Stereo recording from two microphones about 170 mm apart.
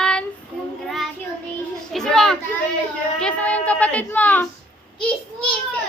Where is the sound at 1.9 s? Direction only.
Centre (ahead or behind).